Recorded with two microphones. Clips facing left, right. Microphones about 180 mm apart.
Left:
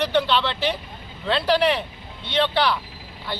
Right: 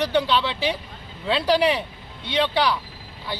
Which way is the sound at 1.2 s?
10° right (ahead or behind).